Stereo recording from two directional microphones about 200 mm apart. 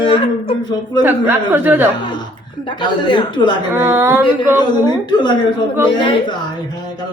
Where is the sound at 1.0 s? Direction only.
10° right (ahead or behind).